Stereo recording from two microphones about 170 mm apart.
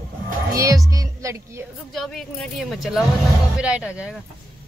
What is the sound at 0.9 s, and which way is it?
Music, 20° right (ahead or behind).